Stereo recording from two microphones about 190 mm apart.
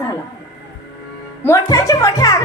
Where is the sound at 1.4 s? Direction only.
15° left (ahead or behind).